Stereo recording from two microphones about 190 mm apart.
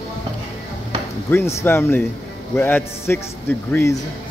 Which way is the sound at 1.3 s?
15° left (ahead or behind).